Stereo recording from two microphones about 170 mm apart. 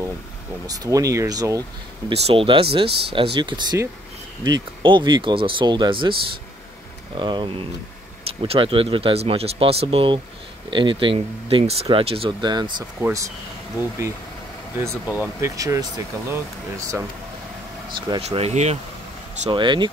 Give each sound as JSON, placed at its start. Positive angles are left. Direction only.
{"t": 0.7, "sound": "speech", "side_deg": -20}
{"t": 2.0, "sound": "speech", "side_deg": -35}
{"t": 7.2, "sound": "speech", "side_deg": -25}
{"t": 17.9, "sound": "speech", "side_deg": -30}
{"t": 19.5, "sound": "speech", "side_deg": -25}